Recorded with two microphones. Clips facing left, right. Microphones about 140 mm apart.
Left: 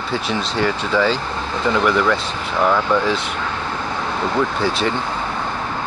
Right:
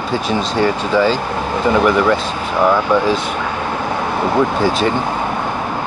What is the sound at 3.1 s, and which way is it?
Speech, 45° right (ahead or behind).